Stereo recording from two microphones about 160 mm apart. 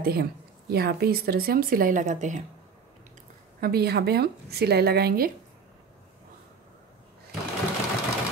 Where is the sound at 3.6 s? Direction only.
80° right.